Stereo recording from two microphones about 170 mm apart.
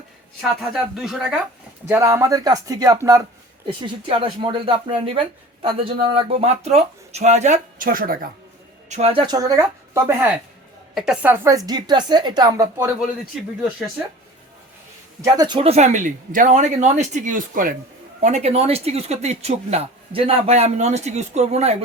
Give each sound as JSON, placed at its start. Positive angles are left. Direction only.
{"t": 0.4, "sound": "speech", "side_deg": 0}
{"t": 1.9, "sound": "a woman's voice", "side_deg": -15}
{"t": 4.0, "sound": "speech", "side_deg": -30}
{"t": 8.9, "sound": "a woman's voice", "side_deg": -35}
{"t": 10.9, "sound": "a woman's voice", "side_deg": -5}
{"t": 15.2, "sound": "speech", "side_deg": -25}
{"t": 18.2, "sound": "speech", "side_deg": -40}